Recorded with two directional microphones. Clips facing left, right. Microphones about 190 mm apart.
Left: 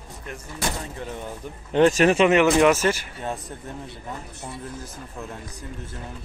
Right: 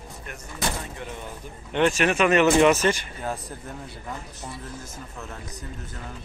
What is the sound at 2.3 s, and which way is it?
Speech, 10° left (ahead or behind).